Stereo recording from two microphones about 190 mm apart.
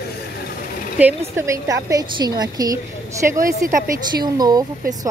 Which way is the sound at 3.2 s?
50° right (ahead or behind).